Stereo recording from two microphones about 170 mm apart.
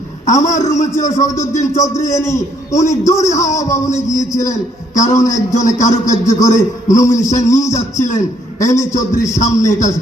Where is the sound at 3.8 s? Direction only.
20° left (ahead or behind).